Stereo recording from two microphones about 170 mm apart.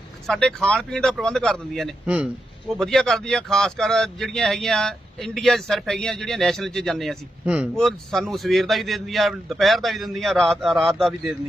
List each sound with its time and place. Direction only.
0.3 s speech: 5° left (ahead or behind)